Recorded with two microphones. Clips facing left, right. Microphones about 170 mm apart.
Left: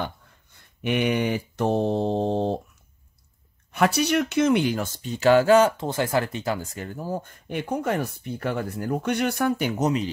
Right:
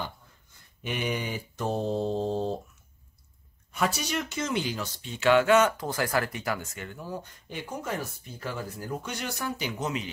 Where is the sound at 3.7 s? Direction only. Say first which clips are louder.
Left 8 dB; 65° left (ahead or behind); by 7.3 s 45° left (ahead or behind).